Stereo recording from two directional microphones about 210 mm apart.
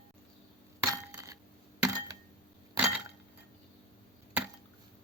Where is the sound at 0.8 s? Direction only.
10° right (ahead or behind).